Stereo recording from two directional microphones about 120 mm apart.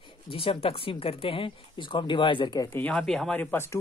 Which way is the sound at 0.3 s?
50° left (ahead or behind).